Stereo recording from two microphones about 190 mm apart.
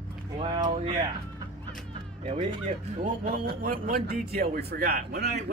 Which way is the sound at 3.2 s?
50° right (ahead or behind).